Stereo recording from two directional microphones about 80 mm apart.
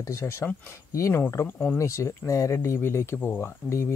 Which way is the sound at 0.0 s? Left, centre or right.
Left.